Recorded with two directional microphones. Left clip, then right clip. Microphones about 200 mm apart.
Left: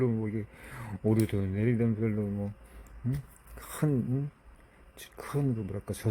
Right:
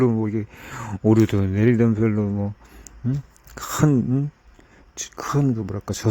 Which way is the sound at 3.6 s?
25° right (ahead or behind).